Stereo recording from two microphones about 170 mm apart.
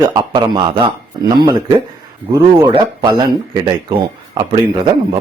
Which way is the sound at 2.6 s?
25° right (ahead or behind).